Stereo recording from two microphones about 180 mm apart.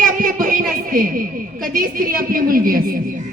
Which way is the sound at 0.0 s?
50° right (ahead or behind).